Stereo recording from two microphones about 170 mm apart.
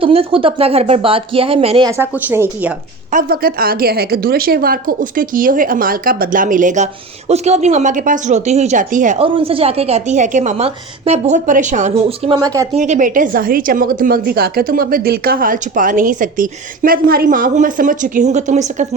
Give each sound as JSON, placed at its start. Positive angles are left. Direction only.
{"t": 0.0, "sound": "a woman's voice", "side_deg": -35}
{"t": 1.9, "sound": "speech", "side_deg": -10}
{"t": 3.1, "sound": "a woman's voice", "side_deg": -55}
{"t": 9.1, "sound": "a woman's voice", "side_deg": -30}
{"t": 12.3, "sound": "speech", "side_deg": -20}
{"t": 12.8, "sound": "a woman's voice", "side_deg": -50}